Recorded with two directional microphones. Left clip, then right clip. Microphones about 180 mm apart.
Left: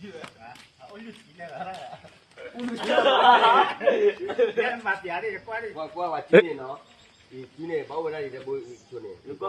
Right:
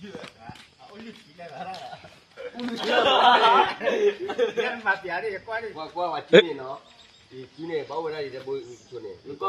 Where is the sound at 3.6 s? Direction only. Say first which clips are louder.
Even; centre (ahead or behind).